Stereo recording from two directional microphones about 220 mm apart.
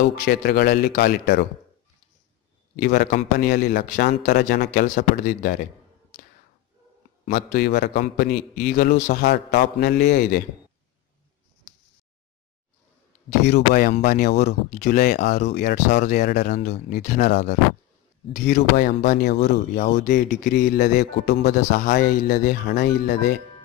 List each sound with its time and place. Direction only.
0.2 s speech: 45° left (ahead or behind)
2.7 s speech: 45° left (ahead or behind)
7.2 s speech: 45° left (ahead or behind)
13.5 s speech: 35° left (ahead or behind)
15.4 s speech: 45° left (ahead or behind)
17.0 s speech: 35° left (ahead or behind)
18.3 s speech: 45° left (ahead or behind)